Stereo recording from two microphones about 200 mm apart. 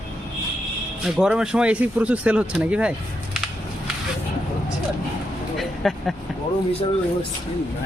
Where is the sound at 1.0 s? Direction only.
5° right (ahead or behind).